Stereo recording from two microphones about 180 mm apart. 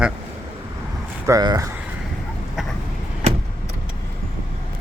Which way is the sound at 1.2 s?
20° right (ahead or behind).